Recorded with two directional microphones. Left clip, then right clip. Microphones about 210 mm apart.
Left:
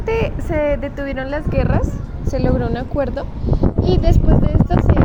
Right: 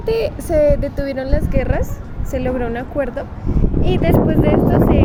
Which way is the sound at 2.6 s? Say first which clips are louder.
Even; 40° left (ahead or behind).